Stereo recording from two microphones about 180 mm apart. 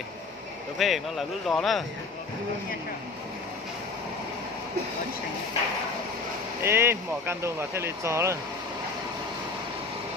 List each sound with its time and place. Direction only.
0.7 s speech: centre (ahead or behind)
6.6 s speech: 15° right (ahead or behind)